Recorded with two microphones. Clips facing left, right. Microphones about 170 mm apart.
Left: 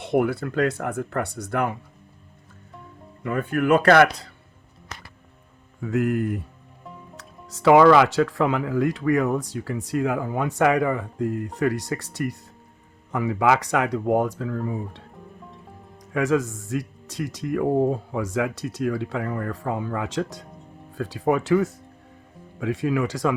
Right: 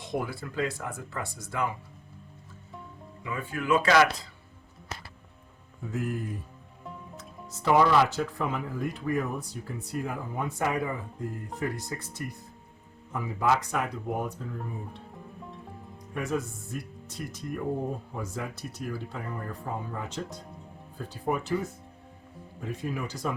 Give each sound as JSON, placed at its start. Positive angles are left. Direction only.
{"t": 0.0, "sound": "speech", "side_deg": 70}
{"t": 3.2, "sound": "speech", "side_deg": 55}
{"t": 5.8, "sound": "speech", "side_deg": 70}
{"t": 16.1, "sound": "speech", "side_deg": 90}